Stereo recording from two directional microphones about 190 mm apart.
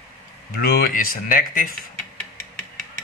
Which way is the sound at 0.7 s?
45° left (ahead or behind).